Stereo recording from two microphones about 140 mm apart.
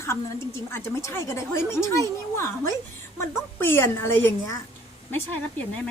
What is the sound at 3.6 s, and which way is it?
Speech, 15° left (ahead or behind).